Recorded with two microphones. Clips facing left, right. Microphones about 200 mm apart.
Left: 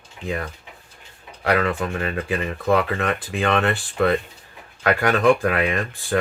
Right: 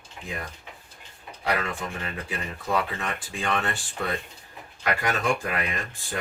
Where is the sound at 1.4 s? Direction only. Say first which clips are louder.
Left 8 dB; 60° left (ahead or behind).